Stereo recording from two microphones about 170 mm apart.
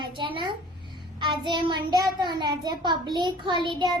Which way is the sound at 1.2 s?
30° right (ahead or behind).